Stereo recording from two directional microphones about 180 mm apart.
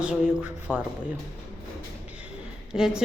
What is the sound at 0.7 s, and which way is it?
Speech, 5° left (ahead or behind).